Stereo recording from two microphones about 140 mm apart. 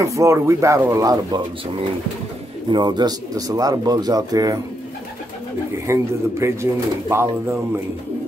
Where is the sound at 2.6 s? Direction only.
30° right (ahead or behind).